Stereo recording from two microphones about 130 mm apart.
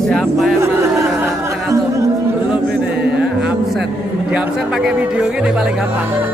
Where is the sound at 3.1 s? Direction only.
5° right (ahead or behind).